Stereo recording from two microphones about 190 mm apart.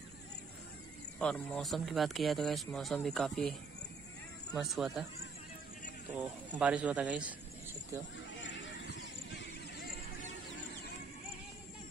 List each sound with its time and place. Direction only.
1.2 s speech: 5° left (ahead or behind)
4.6 s speech: centre (ahead or behind)
6.1 s speech: 10° right (ahead or behind)
8.4 s a sound: 75° left (ahead or behind)